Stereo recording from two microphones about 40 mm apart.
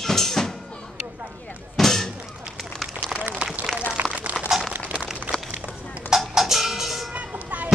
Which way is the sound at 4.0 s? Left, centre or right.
Right.